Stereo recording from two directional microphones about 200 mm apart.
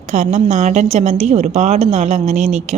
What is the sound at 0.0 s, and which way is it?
A woman's voice, 35° right (ahead or behind).